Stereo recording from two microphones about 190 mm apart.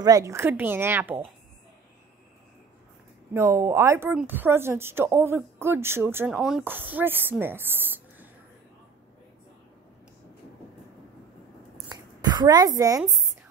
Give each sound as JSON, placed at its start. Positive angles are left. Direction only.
{"t": 0.0, "sound": "speech", "side_deg": -15}
{"t": 3.3, "sound": "speech", "side_deg": -15}
{"t": 11.9, "sound": "a sound", "side_deg": -20}